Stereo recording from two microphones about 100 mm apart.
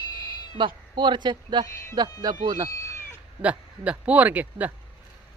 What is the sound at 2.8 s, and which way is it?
Cat, 30° left (ahead or behind).